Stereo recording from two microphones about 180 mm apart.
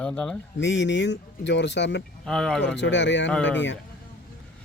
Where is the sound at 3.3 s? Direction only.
5° left (ahead or behind).